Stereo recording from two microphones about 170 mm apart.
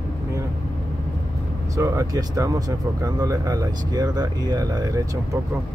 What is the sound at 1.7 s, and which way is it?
Speech, 20° right (ahead or behind).